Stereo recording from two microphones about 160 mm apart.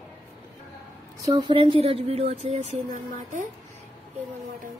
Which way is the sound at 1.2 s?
30° right (ahead or behind).